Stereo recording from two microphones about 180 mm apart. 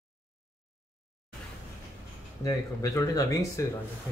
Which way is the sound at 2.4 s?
20° left (ahead or behind).